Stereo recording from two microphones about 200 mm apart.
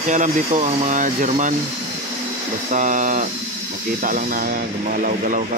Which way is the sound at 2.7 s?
40° right (ahead or behind).